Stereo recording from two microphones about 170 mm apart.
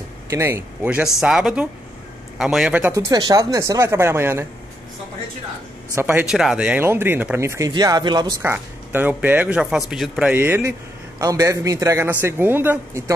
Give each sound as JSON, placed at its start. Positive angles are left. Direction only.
{"t": 0.3, "sound": "a man's voice", "side_deg": -15}
{"t": 2.9, "sound": "speech", "side_deg": -20}
{"t": 5.9, "sound": "speech", "side_deg": -15}
{"t": 6.3, "sound": "speech", "side_deg": -5}
{"t": 8.4, "sound": "speech", "side_deg": -10}
{"t": 10.3, "sound": "speech", "side_deg": -15}